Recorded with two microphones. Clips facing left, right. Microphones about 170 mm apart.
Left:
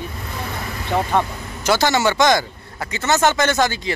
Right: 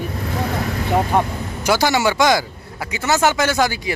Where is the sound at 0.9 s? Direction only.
10° right (ahead or behind).